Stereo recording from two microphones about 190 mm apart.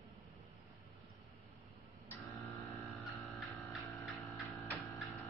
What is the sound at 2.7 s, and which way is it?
Mains hum, centre (ahead or behind).